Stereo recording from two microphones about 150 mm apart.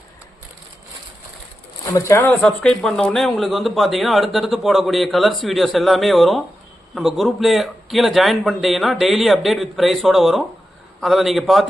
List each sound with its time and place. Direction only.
1.9 s speech: 20° left (ahead or behind)
2.4 s speech: 5° left (ahead or behind)